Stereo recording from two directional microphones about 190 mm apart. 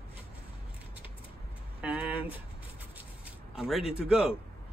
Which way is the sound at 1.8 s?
5° right (ahead or behind).